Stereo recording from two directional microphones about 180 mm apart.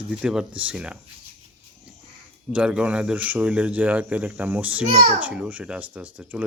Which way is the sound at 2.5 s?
5° right (ahead or behind).